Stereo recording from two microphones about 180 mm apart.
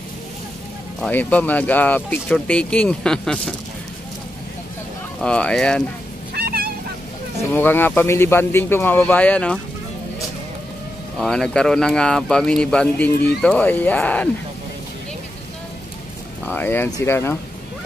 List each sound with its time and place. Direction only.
1.0 s speech: 10° left (ahead or behind)
5.2 s speech: 5° left (ahead or behind)
6.3 s vehicle: 55° right (ahead or behind)
7.5 s speech: 10° left (ahead or behind)
11.1 s speech: 5° left (ahead or behind)
16.4 s speech: 10° left (ahead or behind)